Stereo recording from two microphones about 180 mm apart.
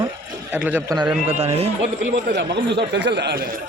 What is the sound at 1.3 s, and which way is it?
Speech, 35° right (ahead or behind).